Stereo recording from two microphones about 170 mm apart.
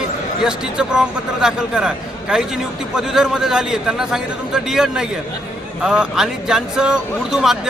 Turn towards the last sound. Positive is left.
turn(degrees=0)  # may be behind; listen again after turning